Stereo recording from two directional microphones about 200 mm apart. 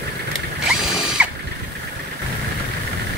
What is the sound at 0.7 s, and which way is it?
Mechanisms, 5° right (ahead or behind).